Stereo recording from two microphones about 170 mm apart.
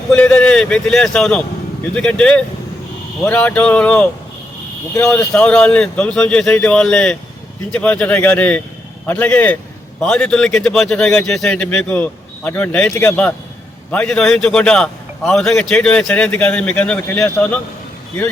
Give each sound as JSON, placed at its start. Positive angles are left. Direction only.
{"t": 0.1, "sound": "a man's voice", "side_deg": 5}
{"t": 5.3, "sound": "a man's voice", "side_deg": 5}